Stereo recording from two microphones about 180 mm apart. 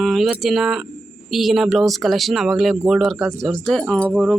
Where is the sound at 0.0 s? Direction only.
Centre (ahead or behind).